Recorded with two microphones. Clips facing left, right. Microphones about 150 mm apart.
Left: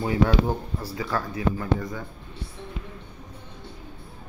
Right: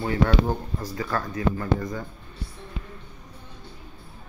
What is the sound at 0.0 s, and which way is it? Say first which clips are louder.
Speech: left 1 dB; 10° left (ahead or behind).